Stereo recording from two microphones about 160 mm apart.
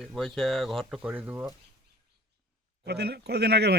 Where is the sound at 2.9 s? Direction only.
90° right.